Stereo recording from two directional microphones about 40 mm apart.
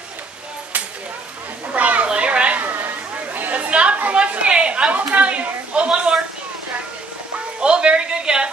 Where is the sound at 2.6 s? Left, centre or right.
Right.